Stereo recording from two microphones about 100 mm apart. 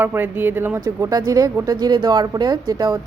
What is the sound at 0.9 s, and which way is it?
Speech, 35° right (ahead or behind).